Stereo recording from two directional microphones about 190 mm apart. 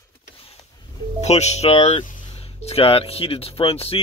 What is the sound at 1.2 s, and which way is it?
Speech, 35° left (ahead or behind).